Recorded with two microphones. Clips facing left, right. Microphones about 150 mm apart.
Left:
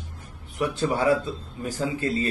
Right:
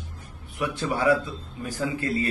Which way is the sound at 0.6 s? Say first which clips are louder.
Left 2 dB; 30° left (ahead or behind).